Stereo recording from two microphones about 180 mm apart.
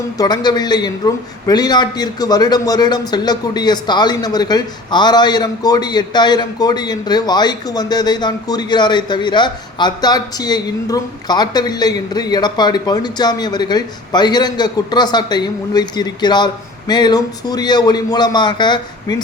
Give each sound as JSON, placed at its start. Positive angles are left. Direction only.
{"t": 0.2, "sound": "a man's voice", "side_deg": 20}